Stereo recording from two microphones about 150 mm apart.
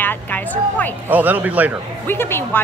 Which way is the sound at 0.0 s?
10° left (ahead or behind).